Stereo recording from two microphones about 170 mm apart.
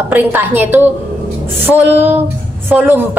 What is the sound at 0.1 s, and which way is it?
A woman's voice, 10° right (ahead or behind).